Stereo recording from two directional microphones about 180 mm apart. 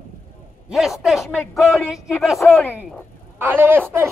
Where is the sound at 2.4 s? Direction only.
10° left (ahead or behind).